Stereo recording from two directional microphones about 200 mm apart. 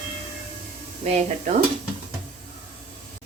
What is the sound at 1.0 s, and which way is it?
Speech, 35° right (ahead or behind).